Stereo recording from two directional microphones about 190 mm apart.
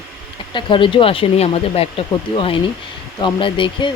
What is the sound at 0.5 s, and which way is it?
Speech, 25° left (ahead or behind).